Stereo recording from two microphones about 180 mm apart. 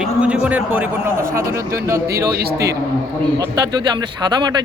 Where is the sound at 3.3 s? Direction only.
25° right (ahead or behind).